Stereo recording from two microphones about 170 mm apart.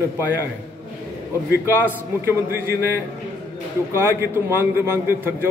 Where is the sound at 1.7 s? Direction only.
10° right (ahead or behind).